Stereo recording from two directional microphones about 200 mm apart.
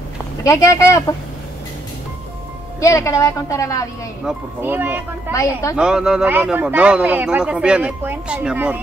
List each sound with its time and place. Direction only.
0.4 s a woman's voice: 15° left (ahead or behind)
2.8 s a woman's voice: 15° left (ahead or behind)
4.3 s speech: 10° right (ahead or behind)
5.3 s a woman's voice: 15° left (ahead or behind)
5.8 s speech: 5° right (ahead or behind)